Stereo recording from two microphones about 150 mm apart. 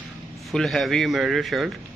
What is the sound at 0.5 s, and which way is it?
A man's voice, centre (ahead or behind).